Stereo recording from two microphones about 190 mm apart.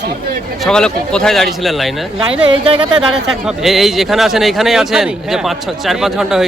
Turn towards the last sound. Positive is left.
turn(degrees=0)  # may be behind; listen again after turning